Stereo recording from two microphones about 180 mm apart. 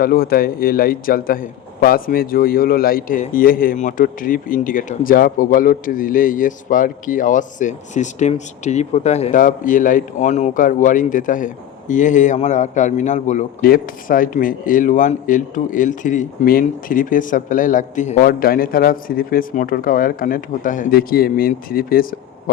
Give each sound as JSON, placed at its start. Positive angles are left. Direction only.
{"t": 0.0, "sound": "a man's voice", "side_deg": 55}